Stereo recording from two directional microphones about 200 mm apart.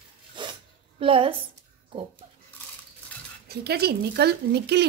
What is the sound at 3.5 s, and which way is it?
Speech, 50° right (ahead or behind).